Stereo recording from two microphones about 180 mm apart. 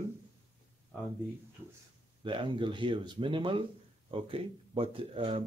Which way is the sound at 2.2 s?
25° right (ahead or behind).